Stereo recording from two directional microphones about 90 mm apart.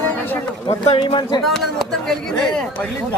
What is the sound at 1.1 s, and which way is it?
Speech, 60° left (ahead or behind).